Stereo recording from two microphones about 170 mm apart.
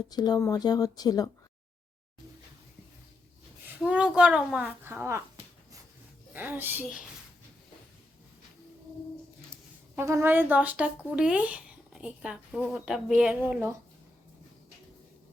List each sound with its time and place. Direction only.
0.1 s speech: 25° left (ahead or behind)
3.8 s speech: 5° right (ahead or behind)
6.3 s speech: 10° right (ahead or behind)
9.9 s speech: 15° right (ahead or behind)